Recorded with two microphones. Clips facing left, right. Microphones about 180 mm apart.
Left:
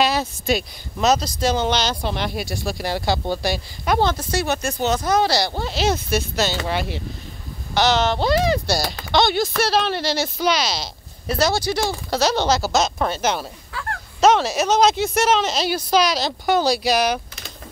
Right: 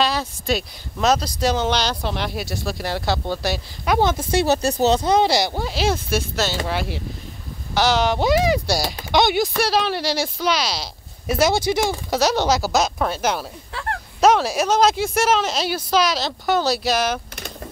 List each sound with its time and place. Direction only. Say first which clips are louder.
0.0 s a sound: left 2 dB; 20° left (ahead or behind)
0.5 s speech: even; 5° left (ahead or behind)
4.3 s speech: right 4 dB; 30° right (ahead or behind)
5.3 s speech: right 1 dB; 10° right (ahead or behind)